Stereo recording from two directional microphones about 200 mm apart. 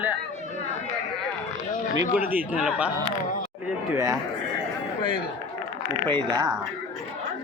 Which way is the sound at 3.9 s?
15° right (ahead or behind).